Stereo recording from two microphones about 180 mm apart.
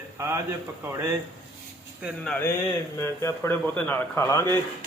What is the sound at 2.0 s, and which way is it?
A man's voice, 5° left (ahead or behind).